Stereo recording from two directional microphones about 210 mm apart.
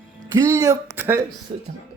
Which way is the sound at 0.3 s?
15° right (ahead or behind).